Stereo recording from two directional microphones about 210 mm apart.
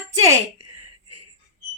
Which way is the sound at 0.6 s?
90° right.